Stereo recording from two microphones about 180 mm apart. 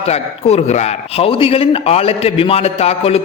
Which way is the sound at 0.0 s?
35° left (ahead or behind).